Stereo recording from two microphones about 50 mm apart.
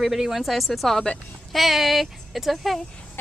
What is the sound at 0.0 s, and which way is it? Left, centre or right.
Speech, centre.